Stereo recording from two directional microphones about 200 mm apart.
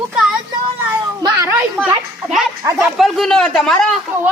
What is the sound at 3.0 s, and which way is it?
Speech, centre (ahead or behind).